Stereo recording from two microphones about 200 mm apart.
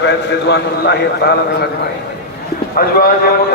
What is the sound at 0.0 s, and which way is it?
A man's voice, 60° left (ahead or behind).